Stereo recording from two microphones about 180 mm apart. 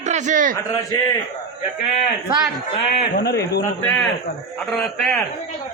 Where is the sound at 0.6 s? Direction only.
20° left (ahead or behind).